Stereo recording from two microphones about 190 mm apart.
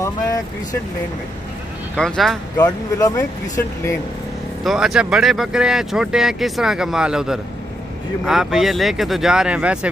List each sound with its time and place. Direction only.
2.0 s speech: centre (ahead or behind)
2.5 s speech: 20° left (ahead or behind)
4.6 s speech: centre (ahead or behind)